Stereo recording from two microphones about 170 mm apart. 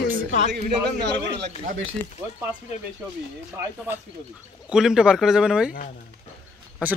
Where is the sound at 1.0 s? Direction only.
85° right.